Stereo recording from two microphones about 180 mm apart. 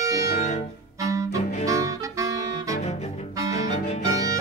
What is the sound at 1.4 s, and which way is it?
Music, 40° left (ahead or behind).